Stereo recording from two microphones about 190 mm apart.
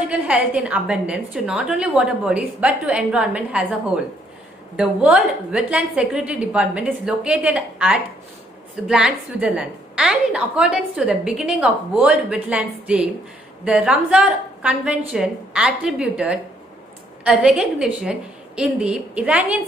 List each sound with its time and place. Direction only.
0.1 s a woman's voice: 5° right (ahead or behind)